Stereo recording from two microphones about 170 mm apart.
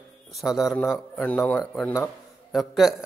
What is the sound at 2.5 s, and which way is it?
Speech, centre (ahead or behind).